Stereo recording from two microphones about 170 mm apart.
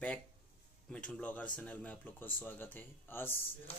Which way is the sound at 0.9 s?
5° left (ahead or behind).